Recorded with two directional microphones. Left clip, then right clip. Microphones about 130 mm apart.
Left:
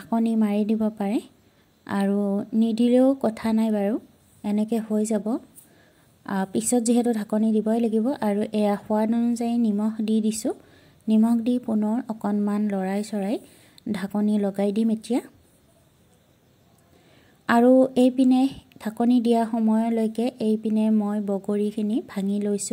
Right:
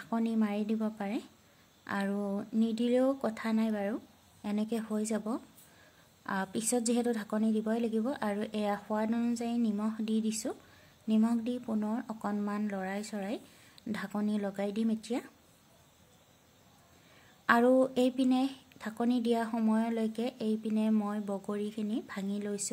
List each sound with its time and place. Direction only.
0.0 s a woman's voice: 35° left (ahead or behind)
17.5 s a woman's voice: 30° left (ahead or behind)